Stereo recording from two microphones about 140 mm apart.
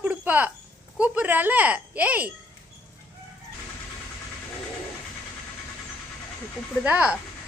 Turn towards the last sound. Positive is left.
turn(degrees=-10)  # may be behind; listen again after turning